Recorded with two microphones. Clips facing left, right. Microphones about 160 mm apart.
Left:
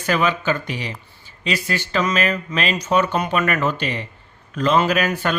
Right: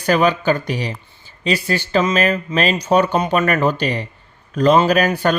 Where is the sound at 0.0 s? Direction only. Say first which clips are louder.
Right 4 dB; 35° right (ahead or behind).